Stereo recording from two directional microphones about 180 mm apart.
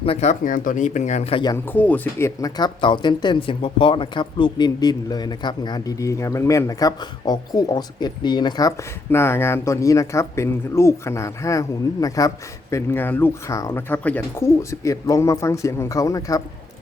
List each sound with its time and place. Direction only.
0.0 s speech: 35° left (ahead or behind)
1.5 s speech: 10° left (ahead or behind)